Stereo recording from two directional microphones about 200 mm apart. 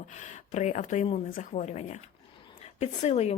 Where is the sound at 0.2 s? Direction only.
35° left (ahead or behind).